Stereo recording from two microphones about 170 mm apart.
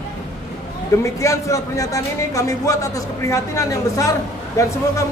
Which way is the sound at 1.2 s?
20° left (ahead or behind).